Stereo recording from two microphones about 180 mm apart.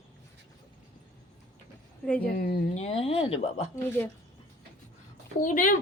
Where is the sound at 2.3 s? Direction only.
60° left (ahead or behind).